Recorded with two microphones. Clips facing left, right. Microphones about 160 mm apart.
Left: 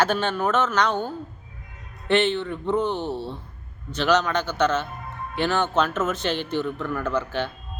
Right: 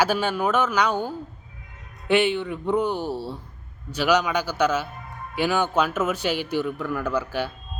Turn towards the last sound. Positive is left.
turn(degrees=-10)  # may be behind; listen again after turning